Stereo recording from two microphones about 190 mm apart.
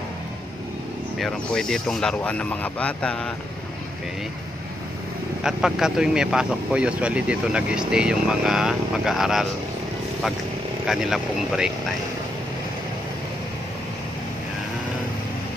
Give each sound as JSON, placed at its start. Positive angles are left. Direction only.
{"t": 1.1, "sound": "speech", "side_deg": 0}
{"t": 5.4, "sound": "speech", "side_deg": -5}
{"t": 10.9, "sound": "speech", "side_deg": -5}